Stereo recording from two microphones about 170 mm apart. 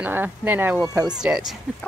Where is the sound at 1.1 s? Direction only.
5° right (ahead or behind).